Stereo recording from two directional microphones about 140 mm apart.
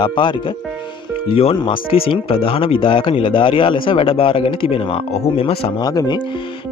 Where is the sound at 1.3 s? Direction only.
45° left (ahead or behind).